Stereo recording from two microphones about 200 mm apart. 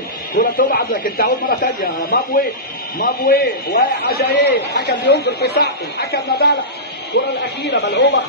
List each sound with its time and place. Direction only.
0.3 s a man's voice: 45° left (ahead or behind)
7.7 s speech: 55° left (ahead or behind)